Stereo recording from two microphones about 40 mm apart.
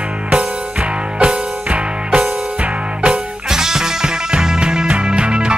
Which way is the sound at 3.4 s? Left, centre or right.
Centre.